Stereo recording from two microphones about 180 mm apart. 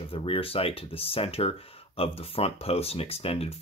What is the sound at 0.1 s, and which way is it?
Speech, 30° left (ahead or behind).